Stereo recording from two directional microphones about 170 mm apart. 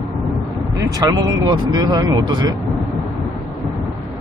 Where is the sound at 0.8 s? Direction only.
20° right (ahead or behind).